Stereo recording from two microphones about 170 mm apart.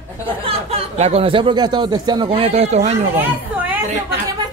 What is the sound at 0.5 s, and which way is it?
Speech, 35° right (ahead or behind).